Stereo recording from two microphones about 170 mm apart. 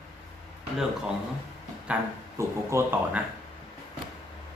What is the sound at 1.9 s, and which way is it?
Speech, 10° right (ahead or behind).